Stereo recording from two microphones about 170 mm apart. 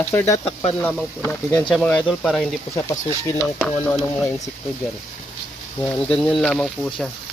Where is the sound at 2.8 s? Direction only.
15° left (ahead or behind).